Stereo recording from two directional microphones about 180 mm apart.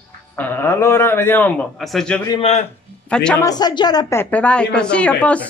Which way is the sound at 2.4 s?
35° left (ahead or behind).